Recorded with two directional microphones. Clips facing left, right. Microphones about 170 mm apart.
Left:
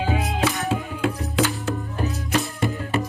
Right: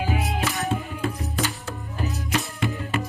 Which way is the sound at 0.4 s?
90° left.